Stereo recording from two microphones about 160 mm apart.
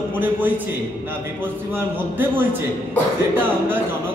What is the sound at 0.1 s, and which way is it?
A man's voice, 10° right (ahead or behind).